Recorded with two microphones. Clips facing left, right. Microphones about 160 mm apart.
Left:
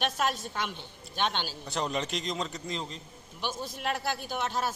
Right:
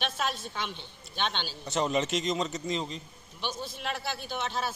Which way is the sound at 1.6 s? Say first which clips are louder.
Right 5 dB; centre (ahead or behind).